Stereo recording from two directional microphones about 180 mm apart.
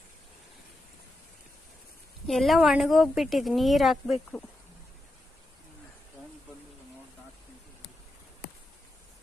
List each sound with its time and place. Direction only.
2.2 s a woman's voice: centre (ahead or behind)